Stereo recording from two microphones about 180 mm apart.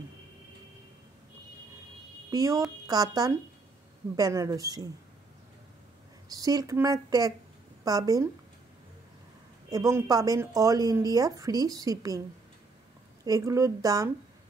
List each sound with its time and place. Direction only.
2.3 s speech: 20° right (ahead or behind)
6.2 s speech: 20° right (ahead or behind)
9.7 s speech: 20° right (ahead or behind)
13.2 s speech: 20° right (ahead or behind)